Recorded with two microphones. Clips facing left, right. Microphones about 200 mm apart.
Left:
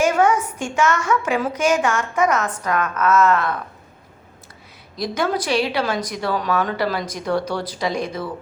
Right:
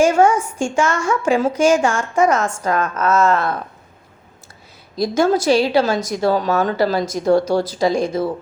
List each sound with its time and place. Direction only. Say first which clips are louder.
0.0 s a woman's voice: right 4 dB; 30° right (ahead or behind)
5.1 s a woman's voice: right 6 dB; 45° right (ahead or behind)
5.8 s a woman's voice: right 4 dB; 25° right (ahead or behind)
6.1 s a woman's voice: right 5 dB; 40° right (ahead or behind)
6.9 s a woman's voice: right 6 dB; 25° right (ahead or behind)
7.4 s a woman's voice: right 7 dB; 45° right (ahead or behind)
7.9 s a woman's voice: right 6 dB; 25° right (ahead or behind)